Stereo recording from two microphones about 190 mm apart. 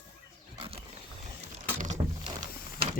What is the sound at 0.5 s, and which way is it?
Wild animals, 30° right (ahead or behind).